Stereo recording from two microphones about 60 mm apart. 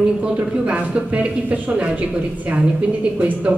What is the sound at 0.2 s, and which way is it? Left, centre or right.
Speech, centre.